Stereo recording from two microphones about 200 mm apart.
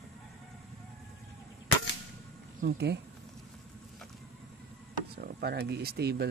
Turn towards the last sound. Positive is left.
turn(degrees=-55)  # may be behind; listen again after turning